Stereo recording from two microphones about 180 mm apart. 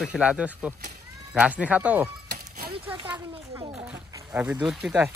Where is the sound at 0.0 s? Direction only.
5° right (ahead or behind).